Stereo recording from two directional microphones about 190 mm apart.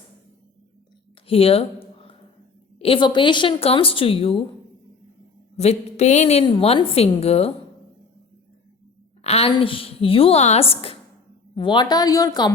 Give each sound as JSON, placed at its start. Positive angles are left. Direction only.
{"t": 1.3, "sound": "a sound", "side_deg": 30}
{"t": 2.7, "sound": "a woman's voice", "side_deg": 30}
{"t": 5.5, "sound": "a woman's voice", "side_deg": 35}
{"t": 9.2, "sound": "a woman's voice", "side_deg": 30}